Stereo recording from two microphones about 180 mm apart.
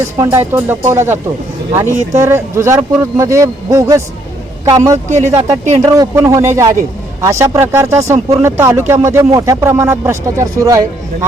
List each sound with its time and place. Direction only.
0.2 s speech: 15° right (ahead or behind)
6.1 s speech: 15° right (ahead or behind)